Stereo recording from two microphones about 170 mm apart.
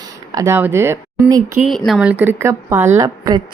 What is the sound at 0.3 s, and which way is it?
A woman's voice, 20° right (ahead or behind).